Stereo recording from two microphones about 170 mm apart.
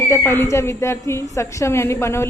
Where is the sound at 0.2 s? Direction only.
15° left (ahead or behind).